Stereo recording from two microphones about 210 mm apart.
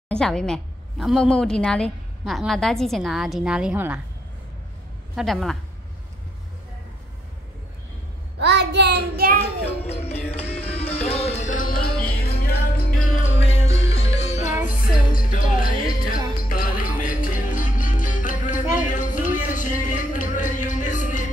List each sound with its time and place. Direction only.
0.1 s a woman's voice: 5° left (ahead or behind)
5.1 s a woman's voice: centre (ahead or behind)
8.4 s child singing: 55° right (ahead or behind)
9.4 s music: 30° left (ahead or behind)
10.4 s music: 10° left (ahead or behind)
10.7 s music: 30° left (ahead or behind); by 13.1 s 45° left (ahead or behind)
13.2 s music: 30° left (ahead or behind)
14.5 s music: 5° right (ahead or behind)
15.3 s music: 40° left (ahead or behind)